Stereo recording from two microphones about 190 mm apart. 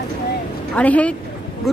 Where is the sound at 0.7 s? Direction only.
5° left (ahead or behind).